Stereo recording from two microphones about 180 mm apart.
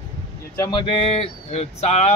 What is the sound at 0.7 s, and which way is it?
Speech, 30° left (ahead or behind).